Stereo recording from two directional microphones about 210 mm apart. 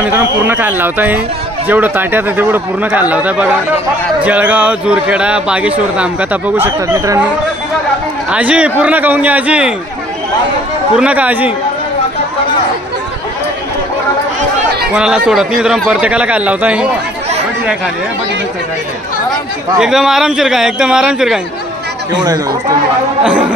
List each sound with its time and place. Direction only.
0.0 s a man's voice: 10° right (ahead or behind)
8.3 s a man's voice: 5° right (ahead or behind)
11.0 s a man's voice: 5° right (ahead or behind)
15.0 s a man's voice: 5° right (ahead or behind)
19.8 s a man's voice: centre (ahead or behind)
22.1 s a man's voice: 20° right (ahead or behind)